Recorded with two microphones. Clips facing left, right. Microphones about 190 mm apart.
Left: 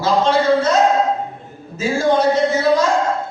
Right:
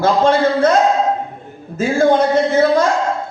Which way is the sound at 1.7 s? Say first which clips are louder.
Right 3 dB; 55° right (ahead or behind).